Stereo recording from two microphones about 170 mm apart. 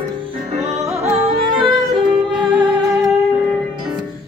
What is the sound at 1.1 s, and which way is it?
Music, 35° right (ahead or behind).